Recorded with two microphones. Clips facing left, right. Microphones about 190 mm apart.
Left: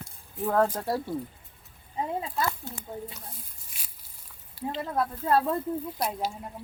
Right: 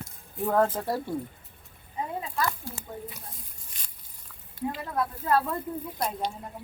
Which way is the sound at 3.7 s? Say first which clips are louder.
Left 2 dB; 10° left (ahead or behind).